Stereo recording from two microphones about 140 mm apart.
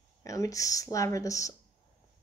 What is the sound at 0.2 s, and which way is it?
Speech, 25° left (ahead or behind).